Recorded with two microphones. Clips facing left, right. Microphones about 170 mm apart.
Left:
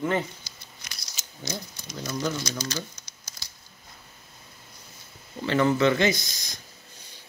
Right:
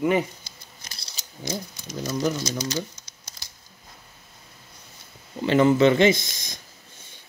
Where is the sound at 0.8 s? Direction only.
30° right (ahead or behind).